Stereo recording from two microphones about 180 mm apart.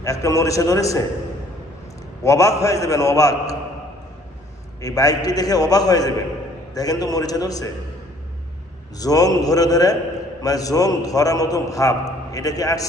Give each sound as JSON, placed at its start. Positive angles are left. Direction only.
{"t": 0.0, "sound": "a man's voice", "side_deg": 20}
{"t": 2.2, "sound": "a man's voice", "side_deg": 15}
{"t": 4.8, "sound": "a man's voice", "side_deg": 20}
{"t": 9.0, "sound": "a man's voice", "side_deg": 20}